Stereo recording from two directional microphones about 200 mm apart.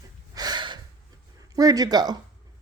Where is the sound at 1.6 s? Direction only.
20° right (ahead or behind).